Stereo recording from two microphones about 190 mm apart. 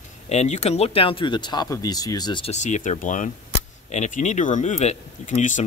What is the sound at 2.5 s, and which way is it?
Speech, 40° left (ahead or behind).